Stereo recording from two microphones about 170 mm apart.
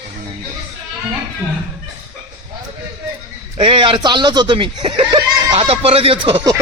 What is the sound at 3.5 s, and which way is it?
Speech, 30° right (ahead or behind).